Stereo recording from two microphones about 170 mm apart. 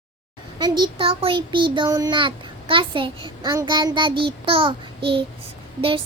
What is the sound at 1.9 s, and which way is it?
A child's voice, 25° right (ahead or behind).